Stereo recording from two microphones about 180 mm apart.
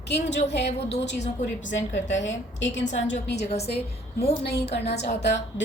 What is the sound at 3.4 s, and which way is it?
Music, 35° left (ahead or behind).